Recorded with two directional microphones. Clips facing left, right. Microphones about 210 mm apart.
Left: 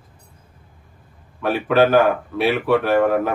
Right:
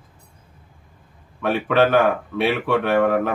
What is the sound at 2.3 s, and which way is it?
Speech, 5° left (ahead or behind).